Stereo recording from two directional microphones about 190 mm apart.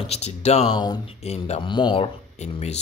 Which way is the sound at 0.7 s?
25° left (ahead or behind).